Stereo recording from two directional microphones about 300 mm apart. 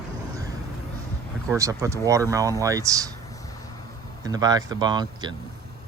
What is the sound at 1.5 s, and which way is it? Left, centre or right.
Speech, centre.